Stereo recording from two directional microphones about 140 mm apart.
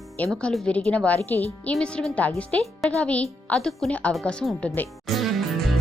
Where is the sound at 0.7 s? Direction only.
10° left (ahead or behind).